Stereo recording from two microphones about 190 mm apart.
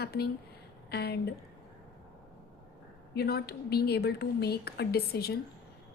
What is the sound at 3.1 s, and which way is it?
A woman's voice, 55° left (ahead or behind).